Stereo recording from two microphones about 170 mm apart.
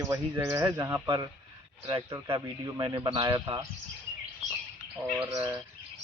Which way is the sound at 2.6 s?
25° right (ahead or behind).